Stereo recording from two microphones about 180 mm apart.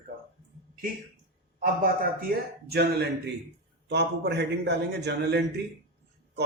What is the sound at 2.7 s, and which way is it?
Speech, 65° right (ahead or behind).